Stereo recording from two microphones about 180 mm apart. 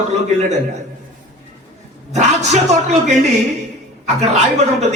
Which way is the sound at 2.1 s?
40° right (ahead or behind).